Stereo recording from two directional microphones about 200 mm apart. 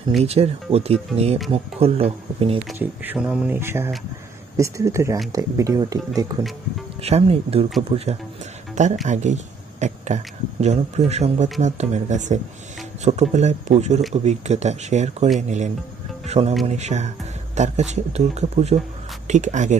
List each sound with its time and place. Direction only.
0.3 s speech: 30° right (ahead or behind)
2.7 s speech: 10° right (ahead or behind)
7.0 s speech: 30° right (ahead or behind)